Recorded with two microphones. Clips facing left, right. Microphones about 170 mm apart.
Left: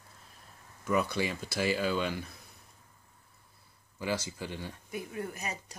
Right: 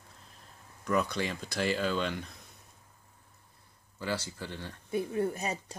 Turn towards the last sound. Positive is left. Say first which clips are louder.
# right 5 dB
turn(degrees=-30)  # may be behind; listen again after turning